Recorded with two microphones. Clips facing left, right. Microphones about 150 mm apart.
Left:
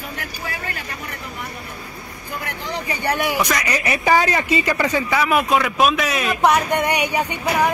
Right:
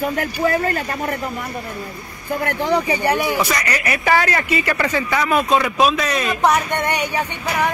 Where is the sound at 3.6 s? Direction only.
20° left (ahead or behind).